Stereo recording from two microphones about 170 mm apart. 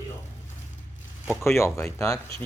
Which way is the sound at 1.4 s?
15° left (ahead or behind).